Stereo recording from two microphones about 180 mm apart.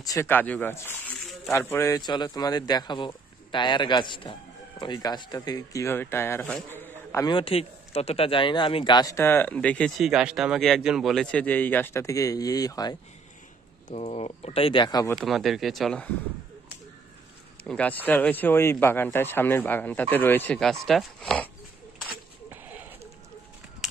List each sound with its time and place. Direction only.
0.0 s a man's voice: 15° left (ahead or behind)
13.8 s speech: 35° left (ahead or behind); by 15.1 s 20° left (ahead or behind)
15.1 s speech: centre (ahead or behind)
17.6 s a man's voice: 10° left (ahead or behind)
22.5 s a sound: 10° right (ahead or behind)